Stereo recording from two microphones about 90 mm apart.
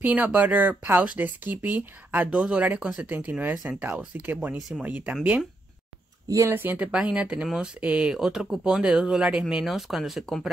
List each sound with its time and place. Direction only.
0.0 s speech: 20° right (ahead or behind)
4.6 s speech: 5° right (ahead or behind)
4.8 s speech: 15° right (ahead or behind)
6.2 s speech: 35° right (ahead or behind)
6.6 s speech: 25° right (ahead or behind)
6.9 s speech: 10° right (ahead or behind)